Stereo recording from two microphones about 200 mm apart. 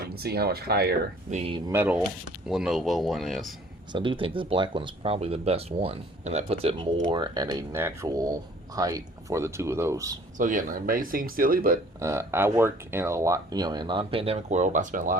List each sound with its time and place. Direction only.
0.0 s speech: 50° right (ahead or behind)
1.3 s speech: 25° right (ahead or behind)
1.7 s speech: 10° right (ahead or behind)
3.9 s speech: 25° right (ahead or behind)
10.3 s speech: 40° right (ahead or behind)
11.9 s speech: 15° right (ahead or behind); by 15.2 s 40° right (ahead or behind)